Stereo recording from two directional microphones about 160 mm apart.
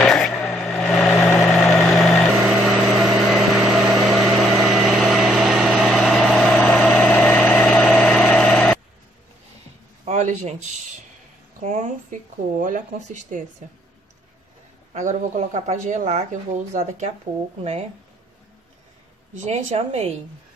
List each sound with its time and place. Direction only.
0.0 s vehicle: 5° left (ahead or behind)
10.0 s a sound: 45° right (ahead or behind)
11.6 s speech: 50° right (ahead or behind)
15.0 s speech: 50° right (ahead or behind)
19.4 s speech: 40° right (ahead or behind)